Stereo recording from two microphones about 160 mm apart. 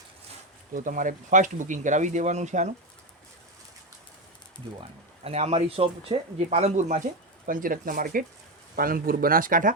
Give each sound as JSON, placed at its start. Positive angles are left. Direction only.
{"t": 0.7, "sound": "speech", "side_deg": -60}
{"t": 4.8, "sound": "speech", "side_deg": -40}